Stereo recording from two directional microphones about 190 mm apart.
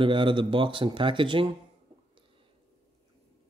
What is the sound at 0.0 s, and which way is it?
Speech, 25° right (ahead or behind).